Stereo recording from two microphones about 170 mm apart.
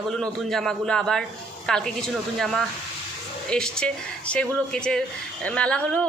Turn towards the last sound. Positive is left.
turn(degrees=5)  # may be behind; listen again after turning